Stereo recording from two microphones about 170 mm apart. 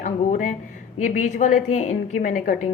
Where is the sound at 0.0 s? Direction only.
45° left (ahead or behind).